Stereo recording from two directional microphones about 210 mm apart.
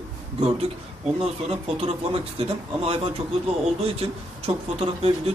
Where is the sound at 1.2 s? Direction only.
30° right (ahead or behind).